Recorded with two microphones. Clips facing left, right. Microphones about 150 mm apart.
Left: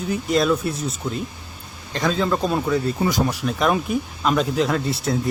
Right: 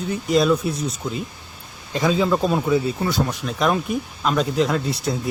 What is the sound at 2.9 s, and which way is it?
Speech, 10° left (ahead or behind).